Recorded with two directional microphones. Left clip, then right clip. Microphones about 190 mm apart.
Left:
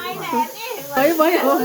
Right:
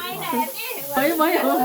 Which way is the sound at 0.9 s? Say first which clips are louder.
Left 4 dB; 10° right (ahead or behind).